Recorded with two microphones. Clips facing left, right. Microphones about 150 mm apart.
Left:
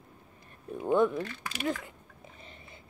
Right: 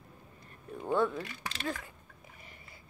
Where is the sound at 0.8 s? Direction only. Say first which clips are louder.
Left 4 dB; 15° left (ahead or behind).